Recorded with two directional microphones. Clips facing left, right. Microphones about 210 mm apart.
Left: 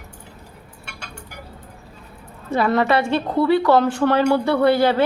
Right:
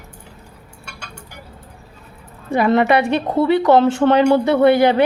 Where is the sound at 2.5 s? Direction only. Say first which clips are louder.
Right 3 dB; 20° right (ahead or behind).